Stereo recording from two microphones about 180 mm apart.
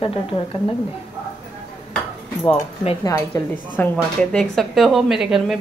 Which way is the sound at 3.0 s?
15° left (ahead or behind).